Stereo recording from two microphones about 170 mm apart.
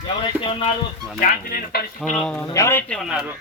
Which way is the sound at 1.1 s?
55° left (ahead or behind).